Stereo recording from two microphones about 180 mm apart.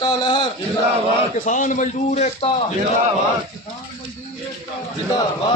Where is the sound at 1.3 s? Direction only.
45° left (ahead or behind).